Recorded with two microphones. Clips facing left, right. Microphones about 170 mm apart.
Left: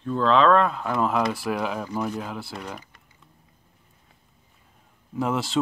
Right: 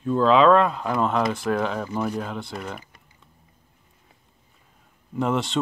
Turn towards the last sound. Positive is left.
turn(degrees=5)  # may be behind; listen again after turning